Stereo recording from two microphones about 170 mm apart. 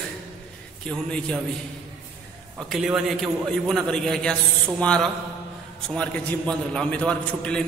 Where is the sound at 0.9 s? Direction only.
5° left (ahead or behind).